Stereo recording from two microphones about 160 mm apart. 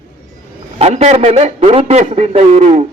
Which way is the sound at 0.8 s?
40° right (ahead or behind).